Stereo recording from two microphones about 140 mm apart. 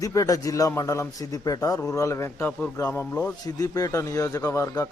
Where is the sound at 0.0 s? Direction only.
25° left (ahead or behind).